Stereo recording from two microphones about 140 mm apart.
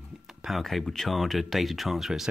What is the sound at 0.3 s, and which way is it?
Speech, centre (ahead or behind).